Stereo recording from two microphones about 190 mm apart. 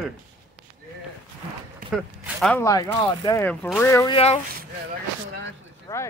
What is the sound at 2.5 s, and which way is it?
Speech, 15° left (ahead or behind).